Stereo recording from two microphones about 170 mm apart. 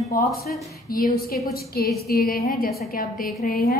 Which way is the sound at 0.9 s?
55° left (ahead or behind).